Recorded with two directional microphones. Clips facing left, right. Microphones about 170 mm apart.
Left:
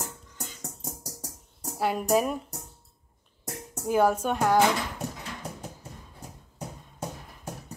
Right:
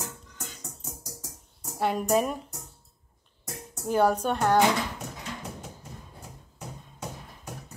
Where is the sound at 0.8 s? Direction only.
40° left (ahead or behind).